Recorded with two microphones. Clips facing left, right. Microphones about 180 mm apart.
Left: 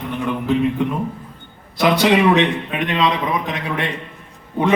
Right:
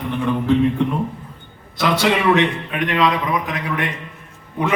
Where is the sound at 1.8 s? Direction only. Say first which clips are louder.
Left 3 dB; 20° left (ahead or behind).